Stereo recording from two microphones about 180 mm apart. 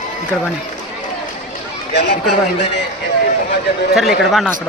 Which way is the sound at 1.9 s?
75° left (ahead or behind).